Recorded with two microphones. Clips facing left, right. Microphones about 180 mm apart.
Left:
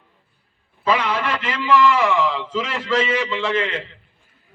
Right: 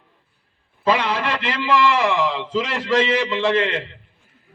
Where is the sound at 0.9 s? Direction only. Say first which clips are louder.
Right 1 dB; 35° right (ahead or behind).